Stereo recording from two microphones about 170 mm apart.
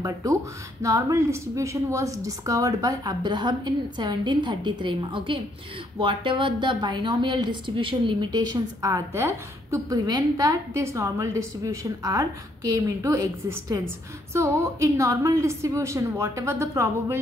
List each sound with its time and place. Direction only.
0.0 s a woman's voice: 20° right (ahead or behind)